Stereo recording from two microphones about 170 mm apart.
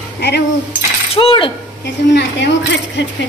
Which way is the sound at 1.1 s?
30° left (ahead or behind).